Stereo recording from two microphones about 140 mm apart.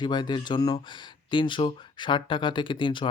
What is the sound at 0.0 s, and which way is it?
Speech, 30° left (ahead or behind).